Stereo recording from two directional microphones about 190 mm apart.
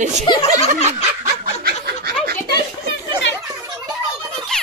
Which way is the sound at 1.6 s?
55° right (ahead or behind).